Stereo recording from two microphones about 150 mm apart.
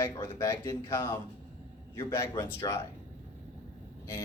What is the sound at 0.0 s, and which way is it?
Speech, 20° left (ahead or behind).